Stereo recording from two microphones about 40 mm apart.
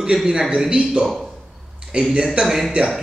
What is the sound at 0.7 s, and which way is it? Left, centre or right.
A man's voice, right.